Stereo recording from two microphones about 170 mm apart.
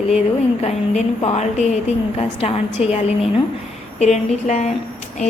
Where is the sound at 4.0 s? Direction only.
40° left (ahead or behind).